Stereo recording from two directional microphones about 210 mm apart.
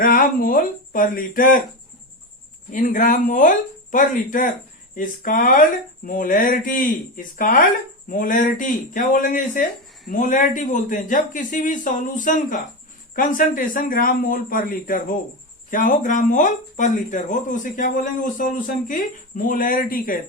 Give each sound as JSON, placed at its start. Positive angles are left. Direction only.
{"t": 0.0, "sound": "speech", "side_deg": 45}
{"t": 2.7, "sound": "speech", "side_deg": 40}